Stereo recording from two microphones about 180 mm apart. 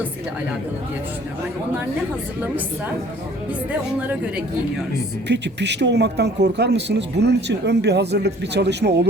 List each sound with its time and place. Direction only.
5.3 s speech: 75° right (ahead or behind)